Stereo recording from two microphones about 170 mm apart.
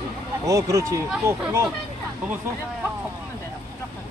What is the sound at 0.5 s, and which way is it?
Speech, 20° right (ahead or behind).